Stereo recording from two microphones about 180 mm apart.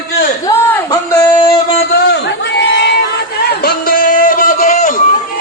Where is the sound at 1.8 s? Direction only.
70° left (ahead or behind).